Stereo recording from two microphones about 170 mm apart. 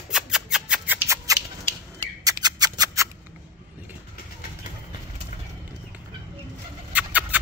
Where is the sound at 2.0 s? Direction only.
20° right (ahead or behind).